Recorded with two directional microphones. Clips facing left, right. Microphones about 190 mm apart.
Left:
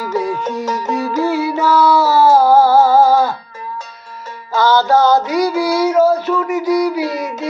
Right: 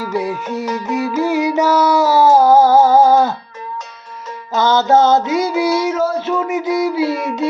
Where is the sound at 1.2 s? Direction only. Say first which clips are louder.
Right 2 dB; 15° right (ahead or behind).